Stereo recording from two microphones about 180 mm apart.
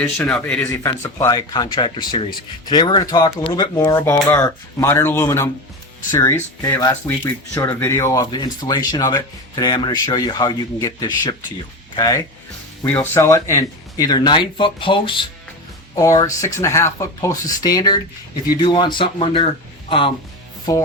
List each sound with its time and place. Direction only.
0.0 s speech: 5° left (ahead or behind); by 19.5 s 30° left (ahead or behind)